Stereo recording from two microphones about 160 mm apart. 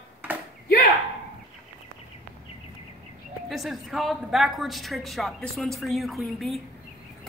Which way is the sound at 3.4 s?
Centre (ahead or behind).